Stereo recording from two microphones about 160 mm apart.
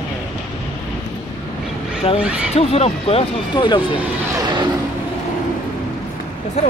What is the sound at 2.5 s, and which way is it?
Speech, 40° left (ahead or behind).